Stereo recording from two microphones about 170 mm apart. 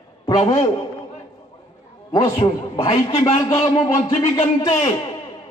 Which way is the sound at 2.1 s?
25° left (ahead or behind).